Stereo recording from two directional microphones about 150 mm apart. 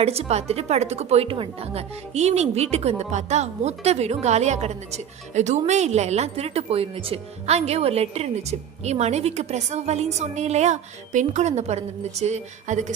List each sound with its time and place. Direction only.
0.0 s a woman's voice: 45° right (ahead or behind)